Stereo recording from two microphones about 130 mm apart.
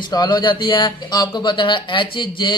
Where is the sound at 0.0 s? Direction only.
30° left (ahead or behind).